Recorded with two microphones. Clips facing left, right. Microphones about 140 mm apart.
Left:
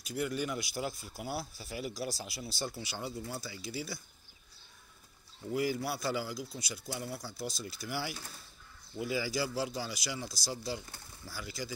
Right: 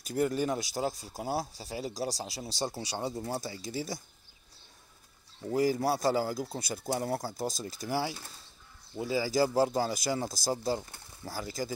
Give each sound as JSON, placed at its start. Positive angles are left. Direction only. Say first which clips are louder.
{"t": 0.0, "sound": "speech", "louder": "right 6 dB", "side_deg": -45}
{"t": 5.5, "sound": "speech", "louder": "right 6 dB", "side_deg": -40}